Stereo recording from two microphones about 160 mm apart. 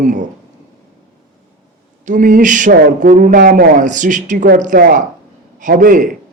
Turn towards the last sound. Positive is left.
turn(degrees=-55)  # may be behind; listen again after turning